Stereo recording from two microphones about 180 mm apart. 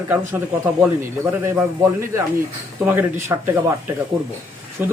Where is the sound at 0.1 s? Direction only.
10° right (ahead or behind).